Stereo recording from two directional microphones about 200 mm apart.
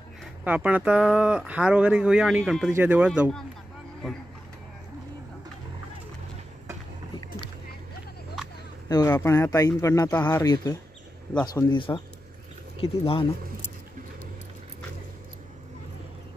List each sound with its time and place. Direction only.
0.2 s speech: 5° right (ahead or behind)
8.8 s speech: 15° left (ahead or behind)